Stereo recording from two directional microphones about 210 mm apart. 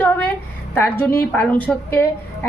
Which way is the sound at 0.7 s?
10° left (ahead or behind).